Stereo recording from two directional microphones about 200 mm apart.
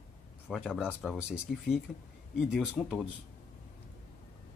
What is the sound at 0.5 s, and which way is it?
Speech, 5° right (ahead or behind).